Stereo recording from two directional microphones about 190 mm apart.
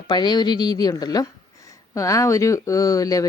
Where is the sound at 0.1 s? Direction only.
20° left (ahead or behind).